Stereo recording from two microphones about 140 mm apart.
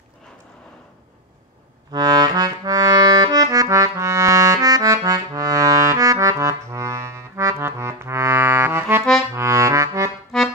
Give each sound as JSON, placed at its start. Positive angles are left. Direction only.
{"t": 1.9, "sound": "accordion", "side_deg": -30}
{"t": 9.3, "sound": "music", "side_deg": -20}